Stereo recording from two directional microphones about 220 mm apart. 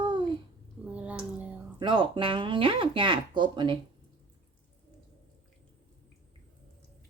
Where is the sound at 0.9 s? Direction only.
5° right (ahead or behind).